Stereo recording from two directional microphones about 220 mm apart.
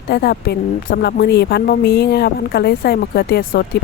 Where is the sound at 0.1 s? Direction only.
45° left (ahead or behind).